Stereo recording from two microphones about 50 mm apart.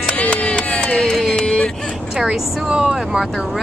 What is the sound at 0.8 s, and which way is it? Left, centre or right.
Female singing, centre.